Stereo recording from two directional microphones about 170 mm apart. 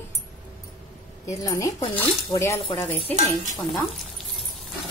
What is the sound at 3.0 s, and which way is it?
Speech, 40° right (ahead or behind).